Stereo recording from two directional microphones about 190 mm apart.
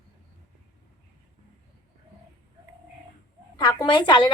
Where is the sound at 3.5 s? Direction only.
25° left (ahead or behind).